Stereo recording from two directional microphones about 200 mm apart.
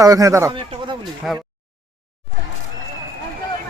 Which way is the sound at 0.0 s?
15° right (ahead or behind).